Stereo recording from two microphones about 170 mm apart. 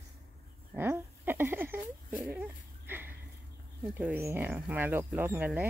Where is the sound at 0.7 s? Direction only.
10° right (ahead or behind).